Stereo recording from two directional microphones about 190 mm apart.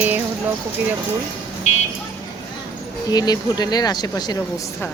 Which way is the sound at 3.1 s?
20° left (ahead or behind).